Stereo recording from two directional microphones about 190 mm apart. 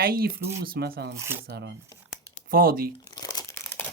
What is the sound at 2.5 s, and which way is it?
Speech, 50° right (ahead or behind).